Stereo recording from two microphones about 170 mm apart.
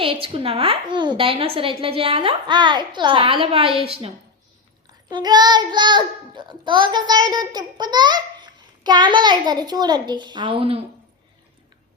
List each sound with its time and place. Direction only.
0.0 s a woman's voice: 30° right (ahead or behind)
4.9 s a child's voice: 25° right (ahead or behind)